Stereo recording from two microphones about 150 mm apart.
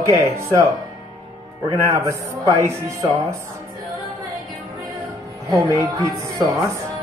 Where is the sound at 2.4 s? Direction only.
25° left (ahead or behind).